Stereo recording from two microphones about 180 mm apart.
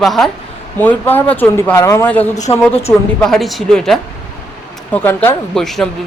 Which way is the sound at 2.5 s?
30° left (ahead or behind).